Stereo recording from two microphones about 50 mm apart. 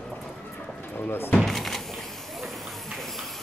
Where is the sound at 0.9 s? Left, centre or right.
Left.